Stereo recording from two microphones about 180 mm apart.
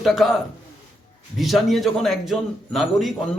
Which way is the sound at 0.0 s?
Centre (ahead or behind).